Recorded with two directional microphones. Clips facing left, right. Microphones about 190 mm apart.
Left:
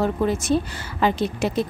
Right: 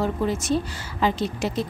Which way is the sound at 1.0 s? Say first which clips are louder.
Left 2 dB; 55° left (ahead or behind).